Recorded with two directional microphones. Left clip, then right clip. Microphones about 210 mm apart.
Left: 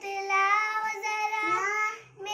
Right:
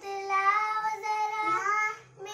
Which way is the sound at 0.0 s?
15° right (ahead or behind).